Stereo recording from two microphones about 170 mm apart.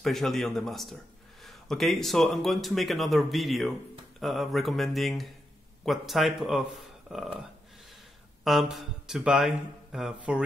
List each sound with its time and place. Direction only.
0.0 s speech: centre (ahead or behind)
8.5 s speech: centre (ahead or behind)